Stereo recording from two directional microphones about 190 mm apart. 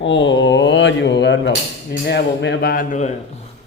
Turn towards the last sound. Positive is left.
turn(degrees=40)  # may be behind; listen again after turning